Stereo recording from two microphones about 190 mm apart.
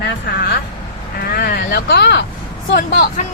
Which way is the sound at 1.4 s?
55° left (ahead or behind).